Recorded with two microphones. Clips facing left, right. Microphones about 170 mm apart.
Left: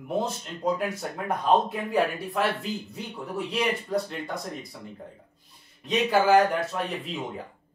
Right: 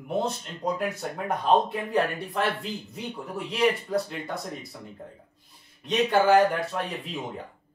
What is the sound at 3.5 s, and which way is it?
Speech, centre (ahead or behind).